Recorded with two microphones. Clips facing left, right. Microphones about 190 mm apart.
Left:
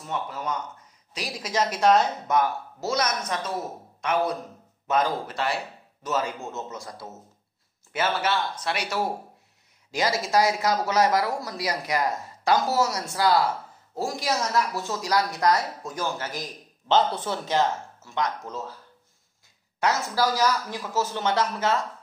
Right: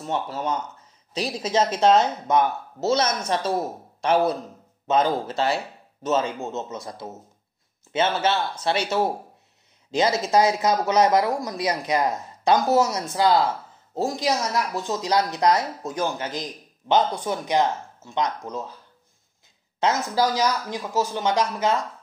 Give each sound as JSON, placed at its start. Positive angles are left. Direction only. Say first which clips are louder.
{"t": 0.0, "sound": "a woman's voice", "louder": "right 4 dB", "side_deg": -30}
{"t": 19.8, "sound": "speech", "louder": "right 2 dB", "side_deg": -20}